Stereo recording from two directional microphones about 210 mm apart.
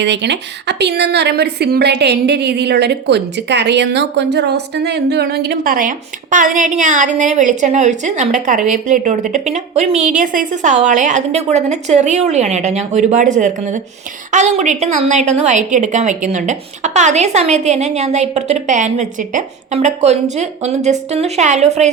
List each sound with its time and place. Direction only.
0.0 s a woman's voice: 55° right (ahead or behind); by 21.8 s 30° right (ahead or behind)